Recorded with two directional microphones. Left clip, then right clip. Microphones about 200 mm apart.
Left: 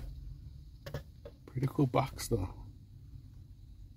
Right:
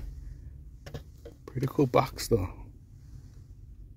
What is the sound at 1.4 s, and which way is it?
Speech, 10° right (ahead or behind).